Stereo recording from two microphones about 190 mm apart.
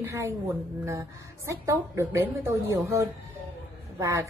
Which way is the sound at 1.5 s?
15° right (ahead or behind).